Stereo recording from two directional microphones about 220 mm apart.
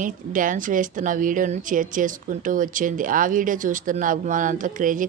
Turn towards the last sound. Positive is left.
turn(degrees=-35)  # may be behind; listen again after turning